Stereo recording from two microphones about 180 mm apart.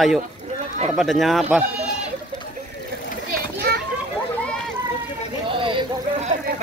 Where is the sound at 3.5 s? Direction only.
65° right (ahead or behind).